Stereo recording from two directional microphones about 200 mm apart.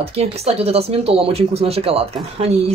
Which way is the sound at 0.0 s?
30° right (ahead or behind).